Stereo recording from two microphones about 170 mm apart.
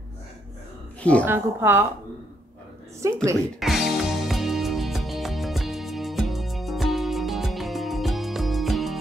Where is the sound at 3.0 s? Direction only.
15° right (ahead or behind).